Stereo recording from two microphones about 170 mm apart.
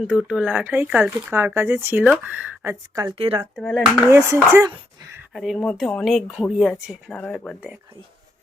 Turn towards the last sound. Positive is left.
turn(degrees=5)  # may be behind; listen again after turning